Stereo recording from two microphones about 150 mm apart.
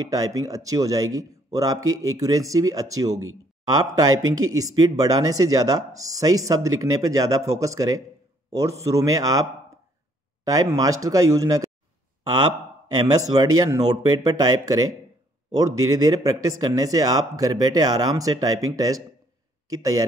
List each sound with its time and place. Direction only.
0.1 s speech: 25° right (ahead or behind)
12.9 s speech: 25° right (ahead or behind)